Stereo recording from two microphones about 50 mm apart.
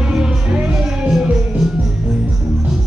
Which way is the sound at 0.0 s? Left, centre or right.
Centre.